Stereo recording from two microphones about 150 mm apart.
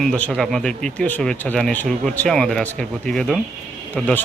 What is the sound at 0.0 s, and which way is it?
Speech, 5° left (ahead or behind).